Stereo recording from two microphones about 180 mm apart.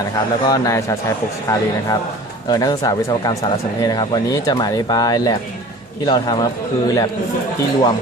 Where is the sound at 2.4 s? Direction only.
20° left (ahead or behind).